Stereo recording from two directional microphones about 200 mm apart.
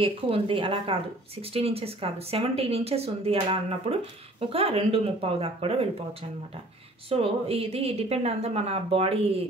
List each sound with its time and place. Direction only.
0.0 s speech: 25° right (ahead or behind)
7.1 s speech: 30° right (ahead or behind)